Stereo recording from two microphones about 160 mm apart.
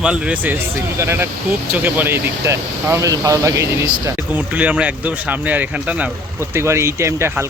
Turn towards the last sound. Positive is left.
turn(degrees=-15)  # may be behind; listen again after turning